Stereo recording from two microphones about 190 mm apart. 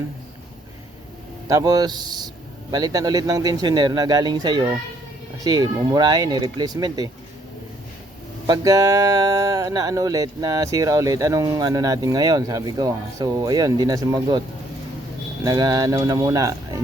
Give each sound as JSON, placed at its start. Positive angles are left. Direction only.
{"t": 1.5, "sound": "speech", "side_deg": -20}
{"t": 8.4, "sound": "speech", "side_deg": -20}
{"t": 15.4, "sound": "speech", "side_deg": -20}